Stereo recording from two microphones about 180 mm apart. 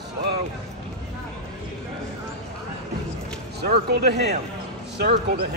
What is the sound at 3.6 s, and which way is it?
Speech, 65° right (ahead or behind).